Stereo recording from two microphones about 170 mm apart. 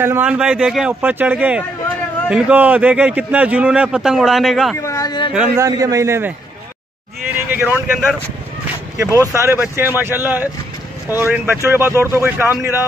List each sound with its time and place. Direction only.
0.0 s a man's voice: 10° right (ahead or behind)
4.7 s a sound: 20° left (ahead or behind)
5.6 s a man's voice: 20° right (ahead or behind)